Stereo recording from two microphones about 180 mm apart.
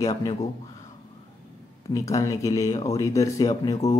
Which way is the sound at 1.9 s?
20° left (ahead or behind).